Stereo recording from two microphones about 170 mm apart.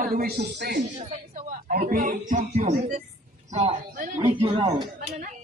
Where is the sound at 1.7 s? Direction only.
55° right (ahead or behind); by 4.9 s 30° right (ahead or behind).